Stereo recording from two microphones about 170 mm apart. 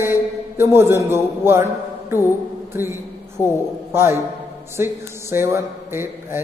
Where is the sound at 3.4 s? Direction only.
15° left (ahead or behind).